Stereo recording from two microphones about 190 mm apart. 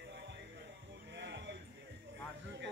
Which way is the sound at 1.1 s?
65° right (ahead or behind).